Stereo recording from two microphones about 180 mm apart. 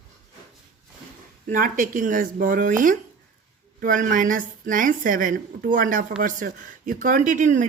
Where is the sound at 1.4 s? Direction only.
50° right (ahead or behind).